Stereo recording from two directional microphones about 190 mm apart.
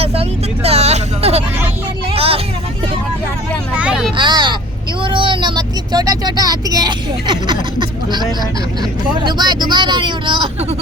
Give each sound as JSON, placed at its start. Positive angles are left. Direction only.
{"t": 0.0, "sound": "vehicle", "side_deg": -30}
{"t": 3.8, "sound": "a sound", "side_deg": -5}
{"t": 4.2, "sound": "vehicle", "side_deg": -25}
{"t": 9.1, "sound": "speech", "side_deg": -25}